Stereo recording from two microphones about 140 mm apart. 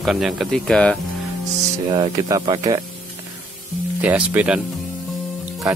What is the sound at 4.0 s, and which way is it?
Speech, 10° right (ahead or behind).